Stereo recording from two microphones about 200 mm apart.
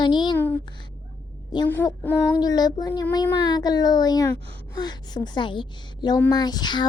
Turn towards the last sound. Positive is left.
turn(degrees=20)  # may be behind; listen again after turning